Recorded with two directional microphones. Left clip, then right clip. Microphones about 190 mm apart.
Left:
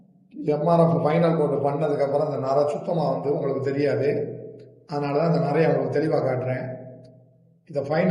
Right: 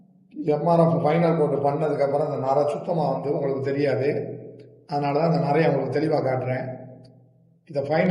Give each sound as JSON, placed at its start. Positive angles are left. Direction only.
{"t": 0.3, "sound": "a man's voice", "side_deg": 0}
{"t": 7.7, "sound": "a man's voice", "side_deg": 0}